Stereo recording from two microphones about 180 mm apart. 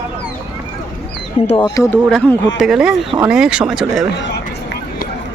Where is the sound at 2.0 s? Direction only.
5° left (ahead or behind).